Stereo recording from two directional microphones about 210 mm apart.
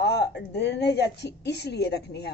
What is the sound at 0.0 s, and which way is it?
A woman's voice, 55° left (ahead or behind).